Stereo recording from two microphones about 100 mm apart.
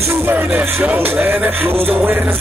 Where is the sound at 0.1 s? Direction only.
20° right (ahead or behind).